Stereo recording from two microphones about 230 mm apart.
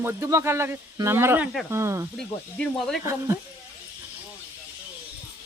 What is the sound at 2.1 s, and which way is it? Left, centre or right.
Speech, centre.